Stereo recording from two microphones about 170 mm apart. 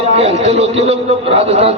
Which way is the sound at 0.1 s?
35° right (ahead or behind).